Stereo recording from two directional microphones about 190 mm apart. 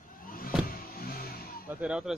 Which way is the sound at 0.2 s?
50° left (ahead or behind).